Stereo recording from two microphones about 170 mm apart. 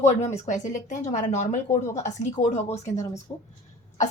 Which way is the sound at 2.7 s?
20° left (ahead or behind).